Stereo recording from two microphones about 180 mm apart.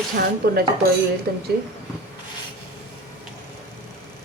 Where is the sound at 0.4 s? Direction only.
60° right (ahead or behind).